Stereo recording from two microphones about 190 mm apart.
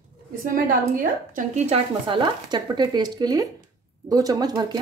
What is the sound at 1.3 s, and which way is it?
Speech, 35° right (ahead or behind).